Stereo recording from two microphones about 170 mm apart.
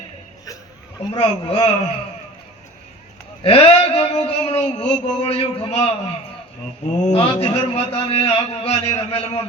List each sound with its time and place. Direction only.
1.1 s a man's voice: 30° left (ahead or behind)
3.4 s a man's voice: 35° left (ahead or behind)